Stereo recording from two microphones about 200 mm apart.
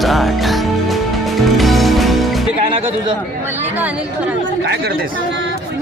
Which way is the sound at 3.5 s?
10° right (ahead or behind).